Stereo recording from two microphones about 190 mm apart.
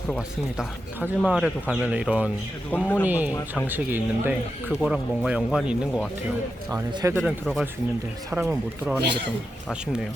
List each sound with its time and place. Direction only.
0.2 s speech: 5° right (ahead or behind)
2.7 s speech: 10° left (ahead or behind)
3.1 s speech: 10° right (ahead or behind)
6.9 s speech: 15° right (ahead or behind)
7.2 s speech: centre (ahead or behind)
8.3 s speech: 10° right (ahead or behind)
9.6 s speech: 5° right (ahead or behind)